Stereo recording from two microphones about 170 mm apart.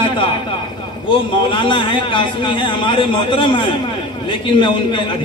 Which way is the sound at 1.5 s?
30° left (ahead or behind).